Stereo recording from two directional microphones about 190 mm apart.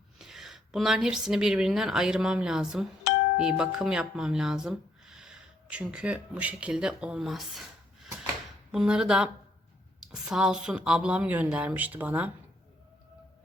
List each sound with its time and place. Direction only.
0.2 s a woman's voice: centre (ahead or behind)